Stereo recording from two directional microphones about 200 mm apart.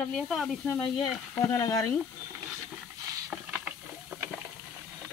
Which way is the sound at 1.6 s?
15° left (ahead or behind).